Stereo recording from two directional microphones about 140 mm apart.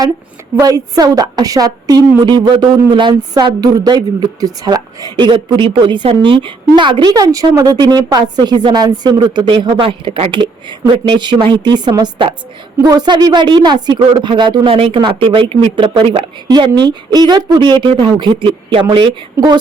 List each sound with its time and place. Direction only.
0.6 s a woman's voice: 25° right (ahead or behind); by 16.2 s 45° right (ahead or behind)
16.5 s a woman's voice: 30° right (ahead or behind)